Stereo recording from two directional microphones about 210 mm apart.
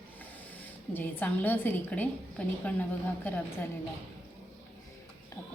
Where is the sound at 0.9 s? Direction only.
10° left (ahead or behind).